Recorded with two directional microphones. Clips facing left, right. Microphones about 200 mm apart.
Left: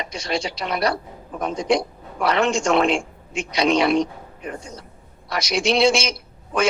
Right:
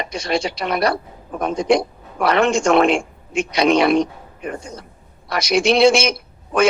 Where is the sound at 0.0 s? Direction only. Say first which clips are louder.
Right 4 dB; 60° right (ahead or behind).